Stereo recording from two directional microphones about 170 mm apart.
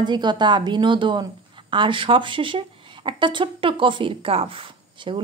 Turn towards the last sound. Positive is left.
turn(degrees=-30)  # may be behind; listen again after turning